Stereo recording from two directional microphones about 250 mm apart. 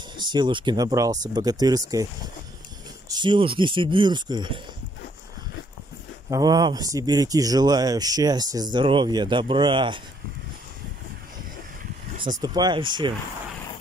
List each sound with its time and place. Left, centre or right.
0.2 s speech: centre
3.1 s speech: centre
6.3 s speech: centre
12.4 s speech: centre